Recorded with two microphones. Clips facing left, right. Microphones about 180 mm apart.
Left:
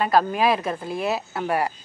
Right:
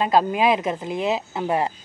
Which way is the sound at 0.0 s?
20° right (ahead or behind).